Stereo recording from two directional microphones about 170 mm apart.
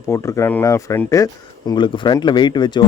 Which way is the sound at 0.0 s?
15° left (ahead or behind).